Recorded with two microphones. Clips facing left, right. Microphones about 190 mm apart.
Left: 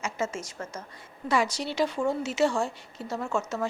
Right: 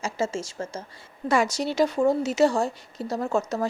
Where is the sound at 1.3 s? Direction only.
45° right (ahead or behind).